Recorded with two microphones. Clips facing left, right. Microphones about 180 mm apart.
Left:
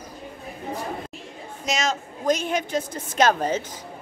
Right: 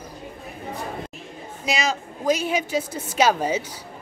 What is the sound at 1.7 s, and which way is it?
A woman's voice, 5° right (ahead or behind).